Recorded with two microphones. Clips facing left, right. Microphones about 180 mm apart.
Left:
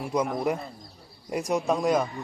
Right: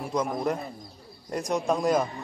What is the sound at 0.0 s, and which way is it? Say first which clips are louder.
Speech: left 1 dB; centre (ahead or behind).